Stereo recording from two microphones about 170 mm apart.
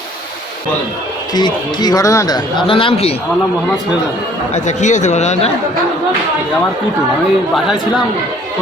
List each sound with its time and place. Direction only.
1.3 s speech: 25° left (ahead or behind)
4.5 s speech: 45° left (ahead or behind)